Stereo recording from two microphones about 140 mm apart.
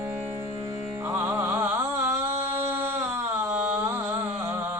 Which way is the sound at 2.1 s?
15° right (ahead or behind).